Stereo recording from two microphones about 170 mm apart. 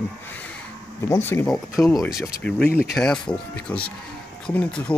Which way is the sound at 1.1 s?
15° left (ahead or behind).